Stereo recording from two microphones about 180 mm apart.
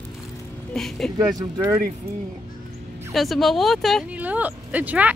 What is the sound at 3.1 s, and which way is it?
Speech, centre (ahead or behind).